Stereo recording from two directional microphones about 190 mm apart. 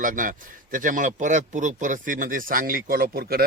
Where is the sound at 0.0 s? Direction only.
45° right (ahead or behind).